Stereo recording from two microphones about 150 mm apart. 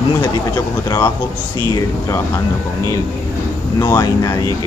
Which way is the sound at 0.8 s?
20° left (ahead or behind).